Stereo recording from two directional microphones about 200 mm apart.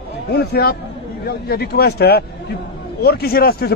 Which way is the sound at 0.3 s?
55° left (ahead or behind).